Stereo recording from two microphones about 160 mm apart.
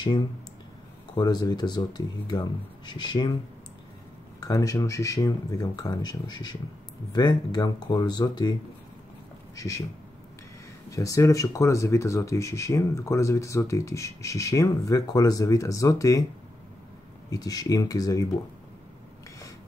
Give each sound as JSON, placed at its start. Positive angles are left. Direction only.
{"t": 1.1, "sound": "speech", "side_deg": 25}
{"t": 4.4, "sound": "speech", "side_deg": 20}
{"t": 9.6, "sound": "speech", "side_deg": 20}
{"t": 10.9, "sound": "speech", "side_deg": 20}
{"t": 17.3, "sound": "speech", "side_deg": 25}